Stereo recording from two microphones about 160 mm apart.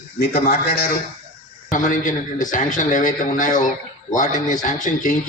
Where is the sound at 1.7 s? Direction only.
55° left (ahead or behind).